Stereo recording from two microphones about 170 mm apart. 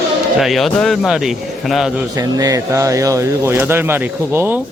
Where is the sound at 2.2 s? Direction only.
20° right (ahead or behind).